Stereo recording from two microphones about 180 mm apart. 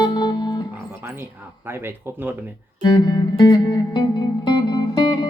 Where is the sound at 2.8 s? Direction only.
25° left (ahead or behind).